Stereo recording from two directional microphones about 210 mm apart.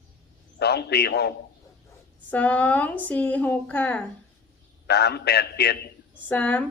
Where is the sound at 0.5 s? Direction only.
50° left (ahead or behind).